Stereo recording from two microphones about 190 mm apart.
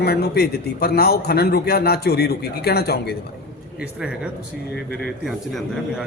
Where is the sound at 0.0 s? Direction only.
55° left (ahead or behind).